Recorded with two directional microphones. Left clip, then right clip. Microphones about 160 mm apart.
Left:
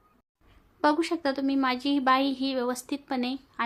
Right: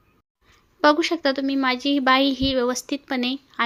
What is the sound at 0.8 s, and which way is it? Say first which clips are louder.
A woman's voice: right 7 dB; 20° right (ahead or behind).